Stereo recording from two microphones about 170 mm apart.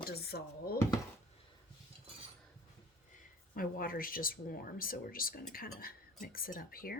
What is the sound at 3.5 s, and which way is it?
Speech, 55° left (ahead or behind).